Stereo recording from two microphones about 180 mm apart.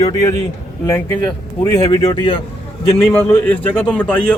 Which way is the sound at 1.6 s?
20° left (ahead or behind).